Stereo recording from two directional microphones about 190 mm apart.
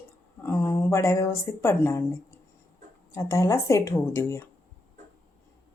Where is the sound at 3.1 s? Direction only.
15° left (ahead or behind).